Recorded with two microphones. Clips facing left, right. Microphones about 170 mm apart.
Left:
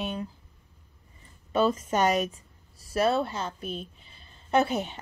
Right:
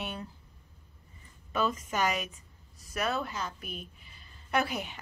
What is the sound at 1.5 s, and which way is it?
A woman's voice, 30° left (ahead or behind).